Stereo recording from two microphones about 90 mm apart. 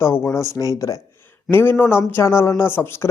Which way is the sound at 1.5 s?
25° left (ahead or behind).